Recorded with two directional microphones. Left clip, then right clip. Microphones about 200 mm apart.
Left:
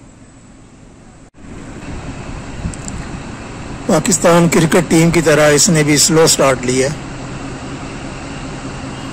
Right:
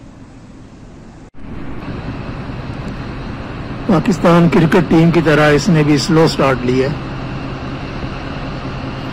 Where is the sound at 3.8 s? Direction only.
25° left (ahead or behind).